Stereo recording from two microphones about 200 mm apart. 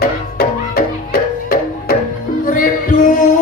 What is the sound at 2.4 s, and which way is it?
Music, 45° left (ahead or behind).